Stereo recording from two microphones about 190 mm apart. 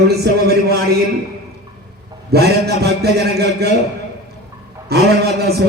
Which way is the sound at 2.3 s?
55° right (ahead or behind).